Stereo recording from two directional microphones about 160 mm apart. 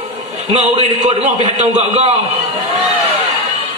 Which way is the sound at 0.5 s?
40° right (ahead or behind).